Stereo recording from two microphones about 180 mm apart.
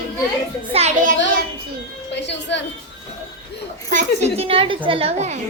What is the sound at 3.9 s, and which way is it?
Speech, 40° right (ahead or behind).